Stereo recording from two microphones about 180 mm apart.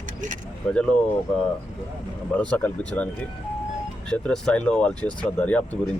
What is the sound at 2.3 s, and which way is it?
Speech, 5° left (ahead or behind).